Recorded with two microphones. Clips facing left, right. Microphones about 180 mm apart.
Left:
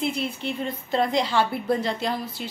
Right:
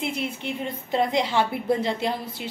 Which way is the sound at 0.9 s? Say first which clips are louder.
Even; 20° right (ahead or behind).